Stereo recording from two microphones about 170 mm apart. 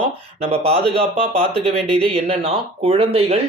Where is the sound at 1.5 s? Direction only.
35° right (ahead or behind).